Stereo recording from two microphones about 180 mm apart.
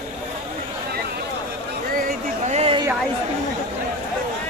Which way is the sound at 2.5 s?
35° right (ahead or behind).